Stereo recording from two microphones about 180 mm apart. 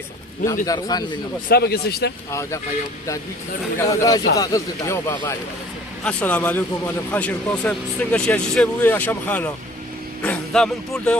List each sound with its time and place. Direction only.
0.6 s a man's voice: 20° left (ahead or behind)
1.5 s speech: 60° left (ahead or behind)
2.3 s speech: 15° left (ahead or behind)
3.8 s a man's voice: 20° left (ahead or behind)